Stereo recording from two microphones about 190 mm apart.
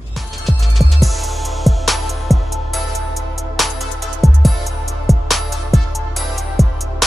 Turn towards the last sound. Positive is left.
turn(degrees=0)  # may be behind; listen again after turning